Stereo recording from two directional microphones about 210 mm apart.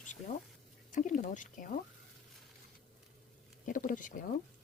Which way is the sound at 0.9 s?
35° left (ahead or behind).